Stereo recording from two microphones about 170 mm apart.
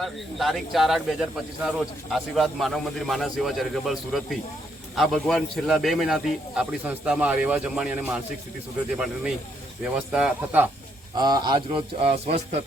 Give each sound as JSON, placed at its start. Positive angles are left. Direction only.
{"t": 0.0, "sound": "a man's voice", "side_deg": 0}
{"t": 9.8, "sound": "a man's voice", "side_deg": -5}
{"t": 11.2, "sound": "a man's voice", "side_deg": -25}